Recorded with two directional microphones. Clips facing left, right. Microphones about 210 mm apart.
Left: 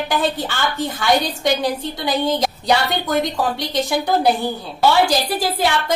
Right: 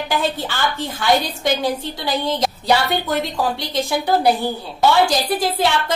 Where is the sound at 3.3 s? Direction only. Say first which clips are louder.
Left 1 dB; centre (ahead or behind).